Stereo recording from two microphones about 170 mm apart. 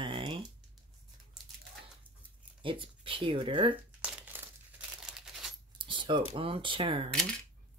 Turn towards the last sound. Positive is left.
turn(degrees=5)  # may be behind; listen again after turning